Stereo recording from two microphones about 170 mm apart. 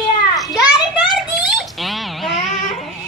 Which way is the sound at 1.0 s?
Centre (ahead or behind).